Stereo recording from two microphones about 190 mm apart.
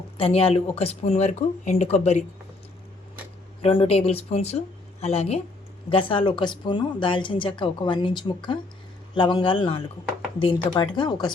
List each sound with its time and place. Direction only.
0.2 s speech: 30° left (ahead or behind)
3.6 s speech: 30° left (ahead or behind)